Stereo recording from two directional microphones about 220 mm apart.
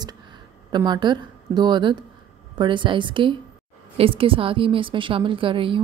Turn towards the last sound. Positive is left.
turn(degrees=-25)  # may be behind; listen again after turning